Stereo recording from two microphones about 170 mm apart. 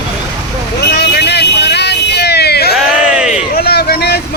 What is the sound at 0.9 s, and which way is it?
Vehicle, 75° left (ahead or behind).